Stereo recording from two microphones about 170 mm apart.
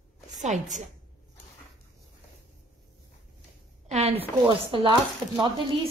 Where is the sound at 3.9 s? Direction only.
40° right (ahead or behind).